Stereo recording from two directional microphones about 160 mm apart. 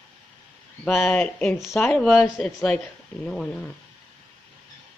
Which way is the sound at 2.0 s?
Centre (ahead or behind).